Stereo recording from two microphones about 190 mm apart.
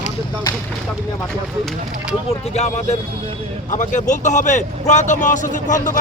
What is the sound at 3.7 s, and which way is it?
A man's voice, 40° left (ahead or behind).